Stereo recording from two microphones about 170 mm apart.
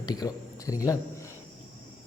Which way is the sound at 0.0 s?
20° left (ahead or behind).